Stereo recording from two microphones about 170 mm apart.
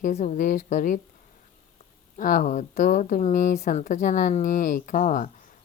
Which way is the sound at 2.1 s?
50° left (ahead or behind).